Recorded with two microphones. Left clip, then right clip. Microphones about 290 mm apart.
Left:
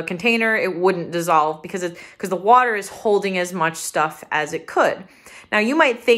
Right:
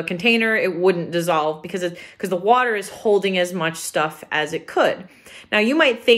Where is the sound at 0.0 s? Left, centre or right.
Centre.